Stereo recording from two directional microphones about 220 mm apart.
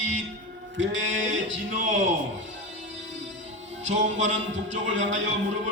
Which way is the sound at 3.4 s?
30° right (ahead or behind).